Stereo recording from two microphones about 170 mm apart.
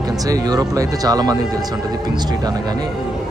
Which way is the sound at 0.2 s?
20° right (ahead or behind).